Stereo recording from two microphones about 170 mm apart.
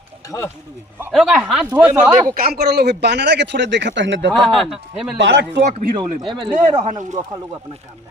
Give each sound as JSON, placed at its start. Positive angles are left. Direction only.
{"t": 0.3, "sound": "speech", "side_deg": 15}
{"t": 1.1, "sound": "a man's voice", "side_deg": 0}
{"t": 2.3, "sound": "speech", "side_deg": -60}
{"t": 4.3, "sound": "a man's voice", "side_deg": 0}
{"t": 5.2, "sound": "speech", "side_deg": -90}
{"t": 6.5, "sound": "speech", "side_deg": -45}